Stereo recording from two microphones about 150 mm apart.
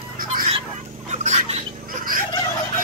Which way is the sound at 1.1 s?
50° right (ahead or behind).